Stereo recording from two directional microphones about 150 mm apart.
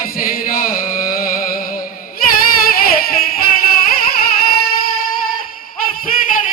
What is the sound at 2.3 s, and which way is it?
Singing, 80° left.